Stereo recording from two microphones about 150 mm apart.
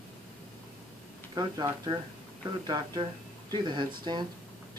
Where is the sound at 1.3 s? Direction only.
30° right (ahead or behind).